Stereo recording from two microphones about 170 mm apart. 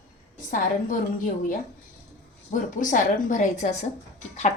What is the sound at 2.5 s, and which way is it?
A woman's voice, 50° left (ahead or behind).